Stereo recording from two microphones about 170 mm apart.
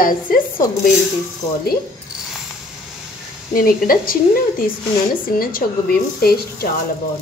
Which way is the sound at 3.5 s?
55° left (ahead or behind).